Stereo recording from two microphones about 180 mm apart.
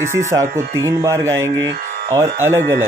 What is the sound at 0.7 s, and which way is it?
Speech, 15° right (ahead or behind).